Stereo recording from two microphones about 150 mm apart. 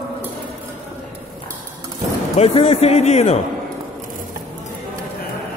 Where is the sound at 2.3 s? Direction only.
40° left (ahead or behind).